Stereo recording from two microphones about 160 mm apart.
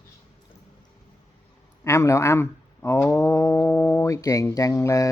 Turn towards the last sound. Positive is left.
turn(degrees=20)  # may be behind; listen again after turning